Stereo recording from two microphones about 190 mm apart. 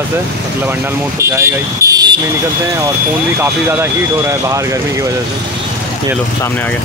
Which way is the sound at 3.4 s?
15° right (ahead or behind).